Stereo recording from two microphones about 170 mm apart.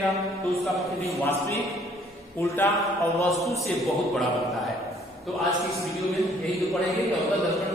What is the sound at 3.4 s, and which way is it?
Speech, centre (ahead or behind).